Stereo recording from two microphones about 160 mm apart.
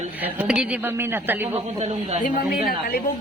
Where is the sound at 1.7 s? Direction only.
45° right (ahead or behind).